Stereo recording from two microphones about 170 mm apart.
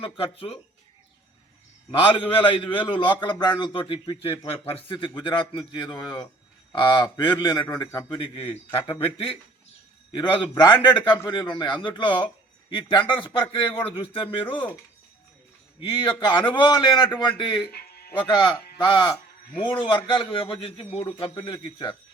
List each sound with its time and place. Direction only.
0.0 s a man's voice: 30° left (ahead or behind)
1.9 s a man's voice: 30° left (ahead or behind)
15.8 s a man's voice: 30° left (ahead or behind)
17.7 s music: 65° left (ahead or behind)
18.3 s a man's voice: 25° left (ahead or behind)